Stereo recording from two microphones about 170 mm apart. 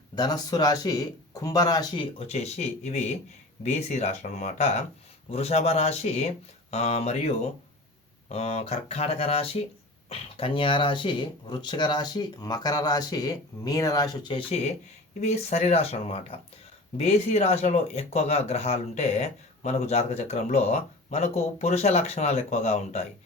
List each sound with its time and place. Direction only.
0.2 s speech: 25° left (ahead or behind); by 23.0 s 40° left (ahead or behind)